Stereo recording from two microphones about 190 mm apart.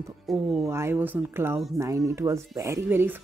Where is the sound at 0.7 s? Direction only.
15° right (ahead or behind).